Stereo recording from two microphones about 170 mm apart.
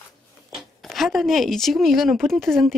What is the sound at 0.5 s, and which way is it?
Speech, centre (ahead or behind).